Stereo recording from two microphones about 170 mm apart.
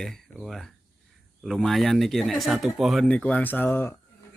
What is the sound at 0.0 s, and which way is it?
Speech, 5° left (ahead or behind).